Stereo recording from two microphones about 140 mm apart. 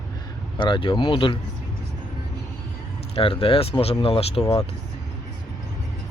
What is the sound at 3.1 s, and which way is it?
Speech, 40° left (ahead or behind).